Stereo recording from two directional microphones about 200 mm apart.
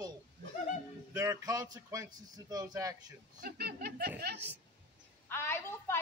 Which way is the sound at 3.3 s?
50° right (ahead or behind).